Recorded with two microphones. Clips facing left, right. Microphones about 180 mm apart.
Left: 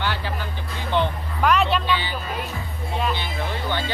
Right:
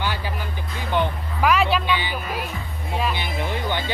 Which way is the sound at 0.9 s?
5° right (ahead or behind).